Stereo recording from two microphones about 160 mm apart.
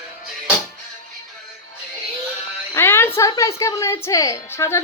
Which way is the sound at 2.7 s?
15° left (ahead or behind).